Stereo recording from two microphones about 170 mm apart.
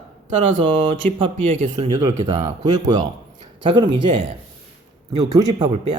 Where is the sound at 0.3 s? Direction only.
35° right (ahead or behind).